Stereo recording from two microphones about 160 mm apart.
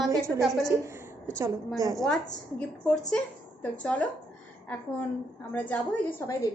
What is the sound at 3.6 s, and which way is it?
Speech, 10° left (ahead or behind).